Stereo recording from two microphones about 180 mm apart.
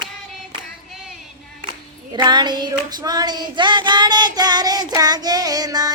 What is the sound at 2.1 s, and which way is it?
Child singing, 25° right (ahead or behind).